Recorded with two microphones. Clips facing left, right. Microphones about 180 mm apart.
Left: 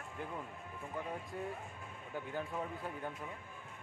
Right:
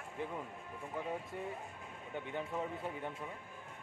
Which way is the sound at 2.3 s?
Centre (ahead or behind).